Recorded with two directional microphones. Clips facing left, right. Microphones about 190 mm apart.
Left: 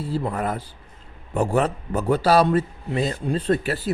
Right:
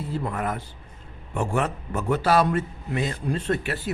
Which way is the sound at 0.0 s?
35° left (ahead or behind).